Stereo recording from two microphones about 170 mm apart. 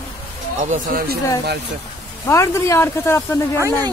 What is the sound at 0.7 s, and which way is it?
Speech, 55° right (ahead or behind).